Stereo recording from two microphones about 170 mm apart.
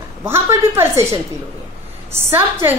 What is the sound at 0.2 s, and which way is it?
A woman's voice, 15° right (ahead or behind).